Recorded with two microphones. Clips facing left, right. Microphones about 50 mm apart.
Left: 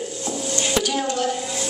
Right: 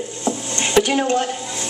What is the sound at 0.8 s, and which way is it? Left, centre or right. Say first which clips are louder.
Speech: right 8 dB; right.